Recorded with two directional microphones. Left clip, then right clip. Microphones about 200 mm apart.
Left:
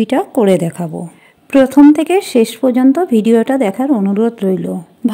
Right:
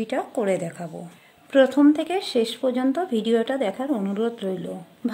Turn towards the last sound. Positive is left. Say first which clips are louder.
# left 12 dB
turn(degrees=30)  # may be behind; listen again after turning